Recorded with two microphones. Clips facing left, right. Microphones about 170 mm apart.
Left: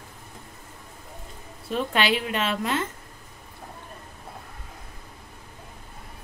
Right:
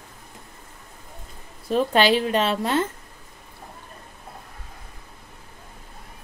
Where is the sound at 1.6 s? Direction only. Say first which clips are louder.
Right 5 dB; 35° right (ahead or behind).